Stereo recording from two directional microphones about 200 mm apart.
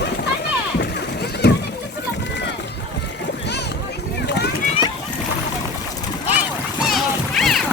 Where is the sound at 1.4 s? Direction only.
55° left (ahead or behind).